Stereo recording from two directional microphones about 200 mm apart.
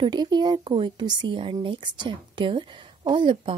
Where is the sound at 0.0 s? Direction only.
20° right (ahead or behind).